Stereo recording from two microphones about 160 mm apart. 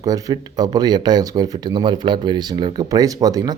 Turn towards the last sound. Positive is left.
turn(degrees=-25)  # may be behind; listen again after turning